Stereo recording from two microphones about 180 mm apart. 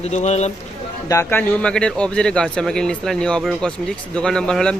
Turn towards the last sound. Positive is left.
turn(degrees=5)  # may be behind; listen again after turning